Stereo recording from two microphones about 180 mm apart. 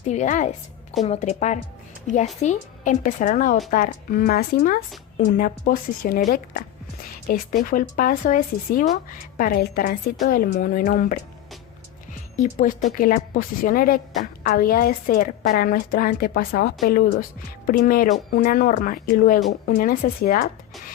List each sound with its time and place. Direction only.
0.1 s a woman's voice: 45° left (ahead or behind)
12.4 s a woman's voice: 45° left (ahead or behind)